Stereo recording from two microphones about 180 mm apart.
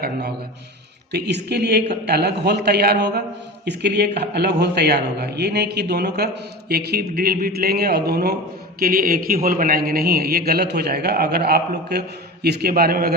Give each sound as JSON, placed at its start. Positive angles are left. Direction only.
{"t": 1.1, "sound": "a woman's voice", "side_deg": -65}